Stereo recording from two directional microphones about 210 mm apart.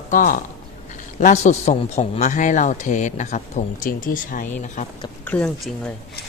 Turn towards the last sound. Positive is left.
turn(degrees=5)  # may be behind; listen again after turning